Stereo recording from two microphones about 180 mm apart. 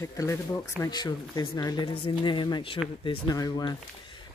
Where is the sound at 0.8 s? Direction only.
20° left (ahead or behind).